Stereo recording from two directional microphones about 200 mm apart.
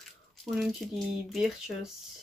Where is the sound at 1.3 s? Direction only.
Centre (ahead or behind).